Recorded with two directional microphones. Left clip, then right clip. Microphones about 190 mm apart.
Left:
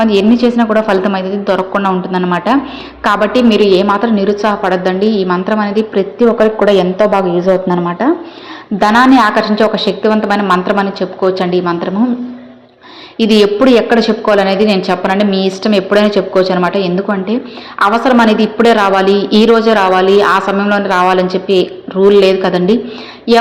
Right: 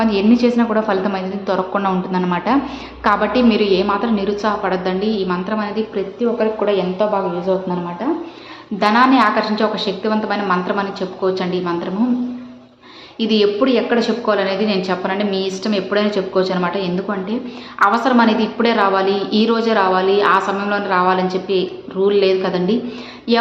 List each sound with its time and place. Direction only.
0.0 s a woman's voice: 20° left (ahead or behind); by 7.2 s 40° left (ahead or behind)
8.8 s a woman's voice: 35° left (ahead or behind)
13.1 s a woman's voice: 35° left (ahead or behind)